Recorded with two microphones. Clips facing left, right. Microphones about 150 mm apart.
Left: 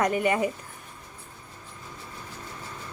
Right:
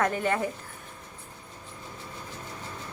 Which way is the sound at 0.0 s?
10° left (ahead or behind).